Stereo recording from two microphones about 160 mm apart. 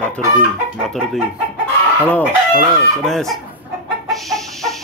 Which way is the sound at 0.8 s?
Centre (ahead or behind).